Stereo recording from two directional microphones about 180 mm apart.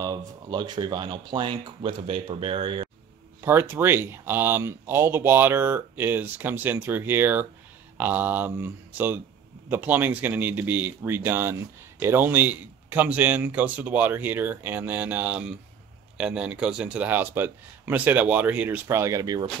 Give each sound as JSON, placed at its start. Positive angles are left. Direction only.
{"t": 0.0, "sound": "speech", "side_deg": -20}
{"t": 3.3, "sound": "speech", "side_deg": -10}